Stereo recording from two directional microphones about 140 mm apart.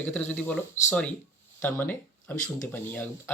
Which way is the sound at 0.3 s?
10° left (ahead or behind).